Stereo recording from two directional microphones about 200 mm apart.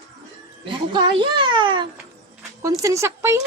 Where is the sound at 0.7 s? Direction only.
25° right (ahead or behind).